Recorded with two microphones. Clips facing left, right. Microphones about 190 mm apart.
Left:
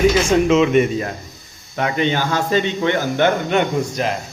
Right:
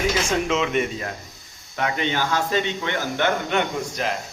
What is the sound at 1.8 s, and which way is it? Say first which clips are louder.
Speech: left 5 dB; 30° left (ahead or behind).